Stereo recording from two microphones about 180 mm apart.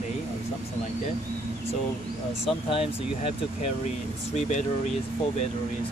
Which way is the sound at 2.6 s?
30° left (ahead or behind).